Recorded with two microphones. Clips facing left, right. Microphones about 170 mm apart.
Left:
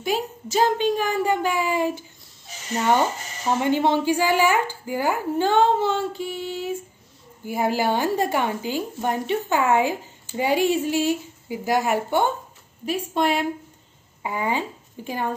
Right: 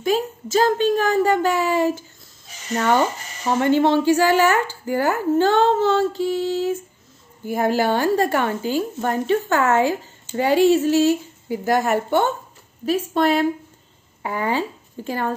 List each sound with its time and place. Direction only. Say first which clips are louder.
0.0 s speech: right 4 dB; 15° left (ahead or behind)
3.6 s speech: right 5 dB; 15° left (ahead or behind)
6.2 s a sound: right 8 dB; 90° right
7.4 s speech: right 3 dB; 10° left (ahead or behind)